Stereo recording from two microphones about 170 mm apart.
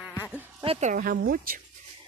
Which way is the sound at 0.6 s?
40° right (ahead or behind).